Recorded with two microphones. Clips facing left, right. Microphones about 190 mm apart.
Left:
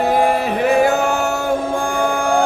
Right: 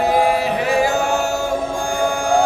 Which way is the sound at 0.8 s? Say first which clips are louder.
Left 2 dB; 60° left (ahead or behind).